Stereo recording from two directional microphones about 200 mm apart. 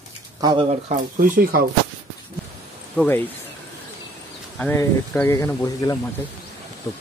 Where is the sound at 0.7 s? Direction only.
40° right (ahead or behind).